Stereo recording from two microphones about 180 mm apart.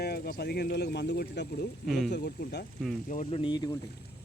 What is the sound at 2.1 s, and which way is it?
Speech, 65° left (ahead or behind).